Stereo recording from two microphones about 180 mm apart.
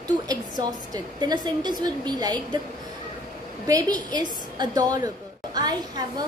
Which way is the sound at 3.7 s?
20° right (ahead or behind).